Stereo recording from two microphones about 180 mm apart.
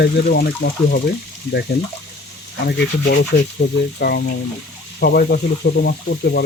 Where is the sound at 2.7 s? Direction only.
65° left (ahead or behind).